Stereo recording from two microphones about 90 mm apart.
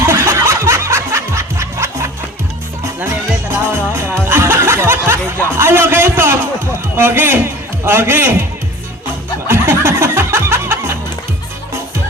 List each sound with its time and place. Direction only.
0.0 s music: 30° right (ahead or behind)
3.5 s music: 25° right (ahead or behind)
5.5 s a man's voice: 25° right (ahead or behind)
9.5 s music: 30° right (ahead or behind)